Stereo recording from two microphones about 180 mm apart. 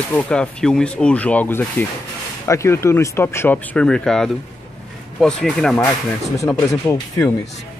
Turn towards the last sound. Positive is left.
turn(degrees=15)  # may be behind; listen again after turning